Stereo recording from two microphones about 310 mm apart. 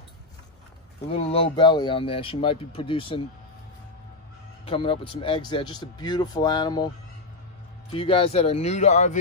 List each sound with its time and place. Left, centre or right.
1.1 s speech: centre
4.6 s speech: centre
7.9 s speech: centre